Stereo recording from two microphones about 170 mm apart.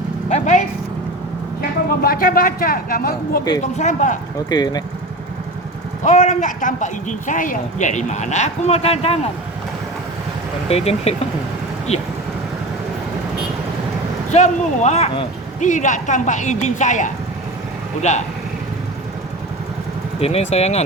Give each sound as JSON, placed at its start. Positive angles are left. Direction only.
{"t": 0.3, "sound": "a sound", "side_deg": 45}
{"t": 2.0, "sound": "speech", "side_deg": 60}
{"t": 3.6, "sound": "a man's voice", "side_deg": 45}
{"t": 4.4, "sound": "speech", "side_deg": 25}
{"t": 6.1, "sound": "a man's voice", "side_deg": 45}
{"t": 10.7, "sound": "speech", "side_deg": 35}
{"t": 14.3, "sound": "speech", "side_deg": 45}
{"t": 15.6, "sound": "a man's voice", "side_deg": 45}
{"t": 20.1, "sound": "speech", "side_deg": 35}